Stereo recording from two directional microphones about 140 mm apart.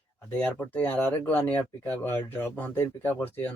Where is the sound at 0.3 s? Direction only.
10° left (ahead or behind).